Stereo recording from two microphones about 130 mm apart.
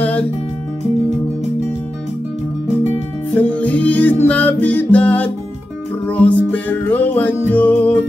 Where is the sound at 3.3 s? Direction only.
10° left (ahead or behind).